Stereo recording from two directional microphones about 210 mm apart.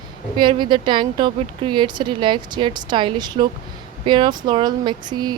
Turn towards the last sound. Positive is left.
turn(degrees=-20)  # may be behind; listen again after turning